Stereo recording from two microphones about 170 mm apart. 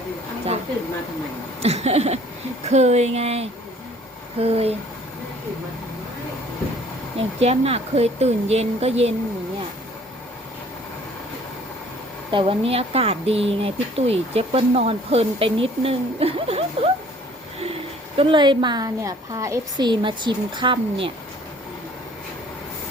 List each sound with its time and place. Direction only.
1.6 s speech: 40° right (ahead or behind)
7.3 s speech: 35° right (ahead or behind)
12.3 s speech: 30° right (ahead or behind)
18.2 s a woman's voice: 30° right (ahead or behind)